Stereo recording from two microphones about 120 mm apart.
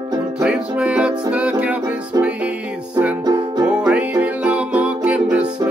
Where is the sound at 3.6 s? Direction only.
10° right (ahead or behind).